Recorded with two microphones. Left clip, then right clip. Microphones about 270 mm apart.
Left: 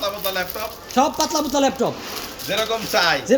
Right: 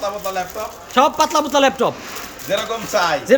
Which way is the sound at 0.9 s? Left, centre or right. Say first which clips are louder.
Right 5 dB; centre.